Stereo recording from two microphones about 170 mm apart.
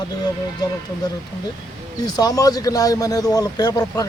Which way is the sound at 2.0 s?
20° left (ahead or behind).